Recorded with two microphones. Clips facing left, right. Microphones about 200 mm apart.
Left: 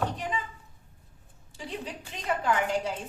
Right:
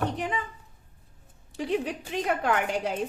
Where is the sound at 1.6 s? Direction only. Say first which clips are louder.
Right 9 dB; 65° right (ahead or behind).